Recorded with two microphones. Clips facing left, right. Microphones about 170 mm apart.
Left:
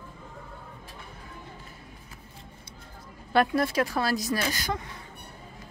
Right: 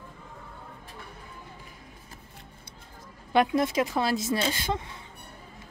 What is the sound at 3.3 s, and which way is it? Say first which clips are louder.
A woman's voice: even; 20° right (ahead or behind).